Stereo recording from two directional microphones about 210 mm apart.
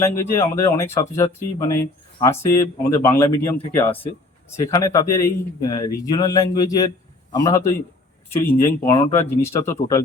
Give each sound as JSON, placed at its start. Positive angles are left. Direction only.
{"t": 0.0, "sound": "speech", "side_deg": 10}
{"t": 4.5, "sound": "speech", "side_deg": 15}